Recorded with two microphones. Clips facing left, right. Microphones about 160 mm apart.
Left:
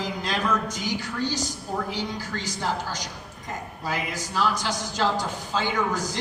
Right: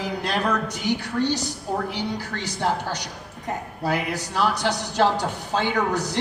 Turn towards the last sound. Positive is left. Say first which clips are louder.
# right 3 dB
turn(degrees=-65)  # may be behind; listen again after turning